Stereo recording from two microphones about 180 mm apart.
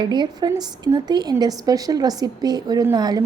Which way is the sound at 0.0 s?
25° right (ahead or behind).